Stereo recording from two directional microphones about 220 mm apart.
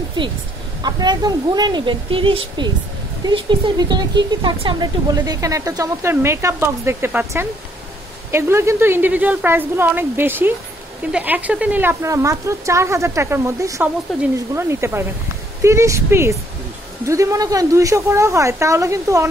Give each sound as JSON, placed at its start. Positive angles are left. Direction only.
{"t": 0.8, "sound": "speech", "side_deg": -20}
{"t": 14.1, "sound": "speech", "side_deg": 0}
{"t": 14.5, "sound": "speech", "side_deg": -10}